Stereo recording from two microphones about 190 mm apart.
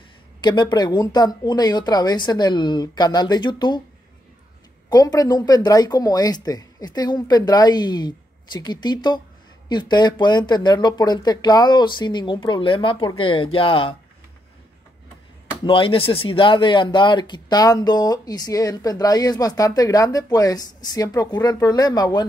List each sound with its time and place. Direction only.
0.4 s speech: 25° left (ahead or behind)
4.8 s speech: 20° left (ahead or behind)
15.6 s speech: 25° left (ahead or behind)